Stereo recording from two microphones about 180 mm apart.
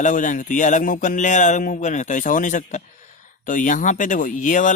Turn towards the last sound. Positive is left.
turn(degrees=45)  # may be behind; listen again after turning